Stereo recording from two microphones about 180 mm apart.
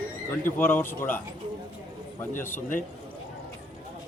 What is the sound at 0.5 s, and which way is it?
Speech, 10° left (ahead or behind).